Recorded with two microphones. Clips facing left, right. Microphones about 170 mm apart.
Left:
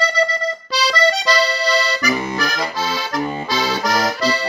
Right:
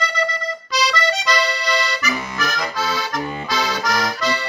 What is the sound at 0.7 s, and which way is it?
Accordion, 30° left (ahead or behind).